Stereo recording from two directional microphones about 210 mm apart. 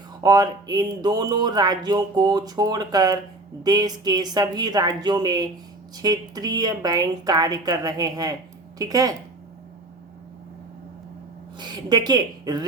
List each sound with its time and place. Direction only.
0.2 s a woman's voice: 20° right (ahead or behind)
11.5 s a woman's voice: 20° right (ahead or behind)